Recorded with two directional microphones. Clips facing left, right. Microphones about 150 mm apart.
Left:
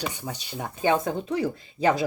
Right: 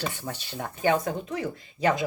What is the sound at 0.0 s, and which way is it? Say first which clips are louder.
Speech: even; 15° left (ahead or behind).